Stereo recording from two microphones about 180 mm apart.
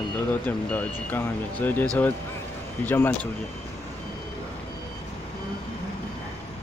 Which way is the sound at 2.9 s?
10° left (ahead or behind).